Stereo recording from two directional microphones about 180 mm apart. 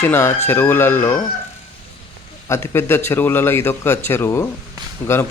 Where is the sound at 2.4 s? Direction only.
15° left (ahead or behind).